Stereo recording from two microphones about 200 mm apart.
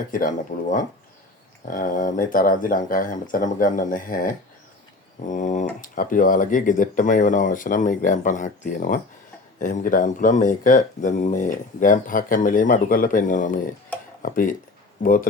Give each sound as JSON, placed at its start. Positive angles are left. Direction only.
{"t": 0.1, "sound": "speech", "side_deg": 40}